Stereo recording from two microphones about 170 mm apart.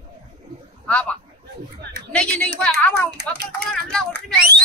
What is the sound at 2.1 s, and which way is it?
Speech, 5° left (ahead or behind).